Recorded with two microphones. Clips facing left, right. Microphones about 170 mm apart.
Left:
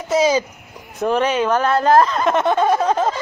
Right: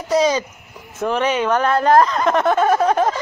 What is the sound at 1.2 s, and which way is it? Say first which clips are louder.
Speech: right 2 dB; 30° left (ahead or behind).